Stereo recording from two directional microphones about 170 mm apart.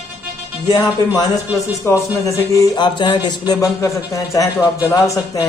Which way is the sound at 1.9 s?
15° left (ahead or behind).